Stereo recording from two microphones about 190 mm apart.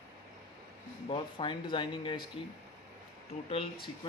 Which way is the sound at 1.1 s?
25° left (ahead or behind).